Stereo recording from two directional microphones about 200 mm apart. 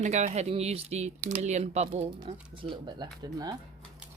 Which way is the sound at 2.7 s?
20° right (ahead or behind).